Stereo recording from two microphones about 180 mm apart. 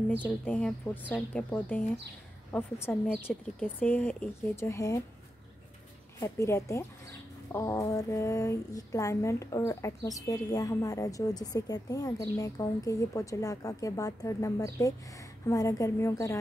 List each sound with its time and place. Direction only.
0.5 s speech: 5° left (ahead or behind)
6.1 s speech: 15° left (ahead or behind)